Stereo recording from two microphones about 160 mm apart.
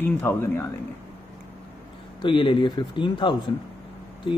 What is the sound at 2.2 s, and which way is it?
Speech, 30° left (ahead or behind).